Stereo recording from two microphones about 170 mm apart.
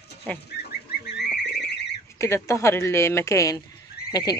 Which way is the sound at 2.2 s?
15° left (ahead or behind).